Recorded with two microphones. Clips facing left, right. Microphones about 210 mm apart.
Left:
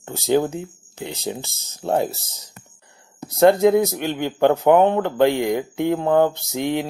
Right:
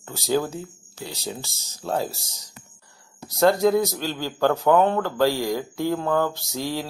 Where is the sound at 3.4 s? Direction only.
20° left (ahead or behind).